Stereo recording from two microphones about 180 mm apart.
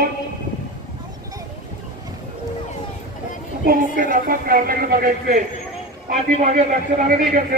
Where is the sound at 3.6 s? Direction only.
55° right (ahead or behind).